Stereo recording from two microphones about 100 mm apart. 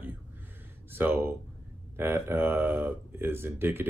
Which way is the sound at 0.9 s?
20° right (ahead or behind).